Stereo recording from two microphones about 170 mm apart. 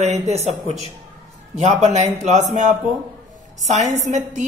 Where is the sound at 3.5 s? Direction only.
45° right (ahead or behind).